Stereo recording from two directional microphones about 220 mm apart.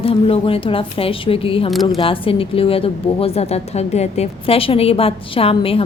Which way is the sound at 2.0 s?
25° left (ahead or behind).